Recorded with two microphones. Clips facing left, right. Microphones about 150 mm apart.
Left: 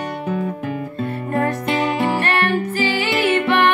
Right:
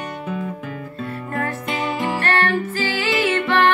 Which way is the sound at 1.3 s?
35° left (ahead or behind).